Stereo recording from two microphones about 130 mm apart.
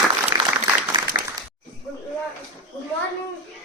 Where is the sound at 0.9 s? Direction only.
35° right (ahead or behind).